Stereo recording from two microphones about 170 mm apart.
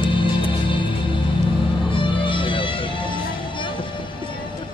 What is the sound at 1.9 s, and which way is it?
Music, 30° left (ahead or behind).